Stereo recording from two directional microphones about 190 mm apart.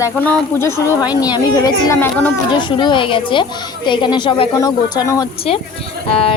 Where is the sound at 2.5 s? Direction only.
25° left (ahead or behind).